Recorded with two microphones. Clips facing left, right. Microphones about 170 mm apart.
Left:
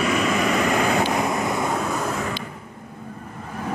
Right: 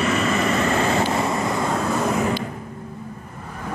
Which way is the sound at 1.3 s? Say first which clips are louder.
Right 1 dB; centre (ahead or behind).